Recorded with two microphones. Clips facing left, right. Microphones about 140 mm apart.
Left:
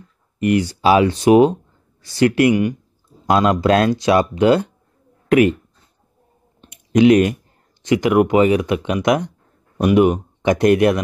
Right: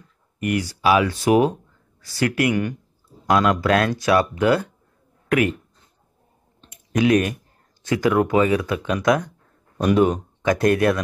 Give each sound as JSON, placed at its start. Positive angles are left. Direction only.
{"t": 0.4, "sound": "speech", "side_deg": 25}
{"t": 6.6, "sound": "clicking", "side_deg": 20}
{"t": 7.8, "sound": "speech", "side_deg": 20}